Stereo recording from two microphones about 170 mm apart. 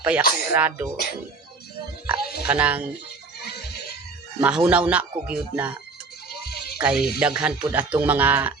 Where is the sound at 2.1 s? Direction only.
70° left (ahead or behind).